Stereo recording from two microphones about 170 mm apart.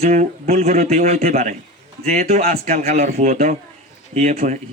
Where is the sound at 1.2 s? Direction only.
50° right (ahead or behind).